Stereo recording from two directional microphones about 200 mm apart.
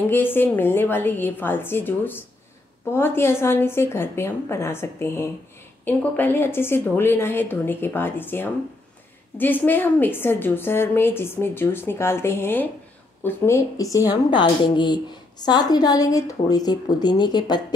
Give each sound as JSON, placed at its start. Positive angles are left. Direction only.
{"t": 0.0, "sound": "a woman's voice", "side_deg": 10}